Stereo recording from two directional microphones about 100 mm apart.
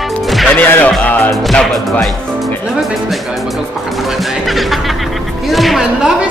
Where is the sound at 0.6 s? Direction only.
15° left (ahead or behind).